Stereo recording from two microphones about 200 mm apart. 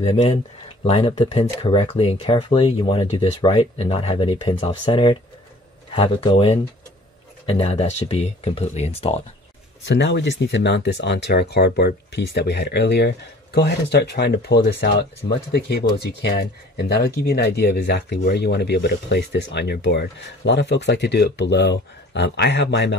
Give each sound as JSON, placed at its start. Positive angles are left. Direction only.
{"t": 0.0, "sound": "speech", "side_deg": 35}
{"t": 9.8, "sound": "speech", "side_deg": 60}